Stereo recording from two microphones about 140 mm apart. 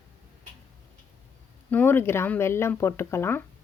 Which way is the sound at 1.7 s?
15° left (ahead or behind).